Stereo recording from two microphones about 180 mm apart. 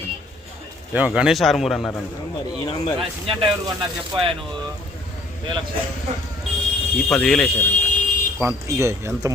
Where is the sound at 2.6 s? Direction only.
25° left (ahead or behind).